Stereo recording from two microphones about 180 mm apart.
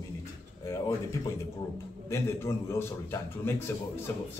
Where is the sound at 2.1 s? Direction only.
15° left (ahead or behind).